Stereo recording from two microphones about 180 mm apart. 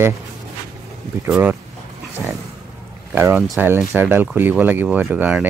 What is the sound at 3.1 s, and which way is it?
Speech, 10° right (ahead or behind).